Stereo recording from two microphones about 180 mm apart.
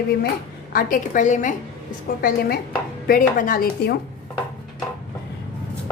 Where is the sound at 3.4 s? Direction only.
55° left (ahead or behind).